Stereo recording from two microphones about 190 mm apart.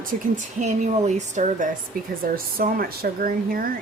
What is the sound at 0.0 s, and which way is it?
Speech, 40° right (ahead or behind).